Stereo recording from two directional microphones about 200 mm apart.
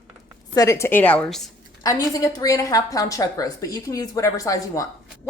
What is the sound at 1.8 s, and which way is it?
A woman's voice, 15° left (ahead or behind).